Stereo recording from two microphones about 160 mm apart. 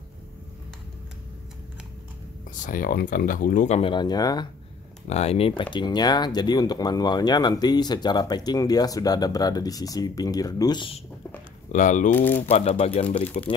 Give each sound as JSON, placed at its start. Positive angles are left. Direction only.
{"t": 2.6, "sound": "speech", "side_deg": 60}
{"t": 3.9, "sound": "speech", "side_deg": 25}
{"t": 5.0, "sound": "speech", "side_deg": 40}
{"t": 5.6, "sound": "speech", "side_deg": 30}
{"t": 11.7, "sound": "speech", "side_deg": 50}
{"t": 12.2, "sound": "speech", "side_deg": 10}
{"t": 12.4, "sound": "speech", "side_deg": 40}
{"t": 13.1, "sound": "speech", "side_deg": 10}